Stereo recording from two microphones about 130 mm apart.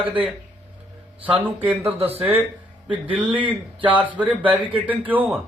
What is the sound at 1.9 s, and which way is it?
Speech, 50° right (ahead or behind).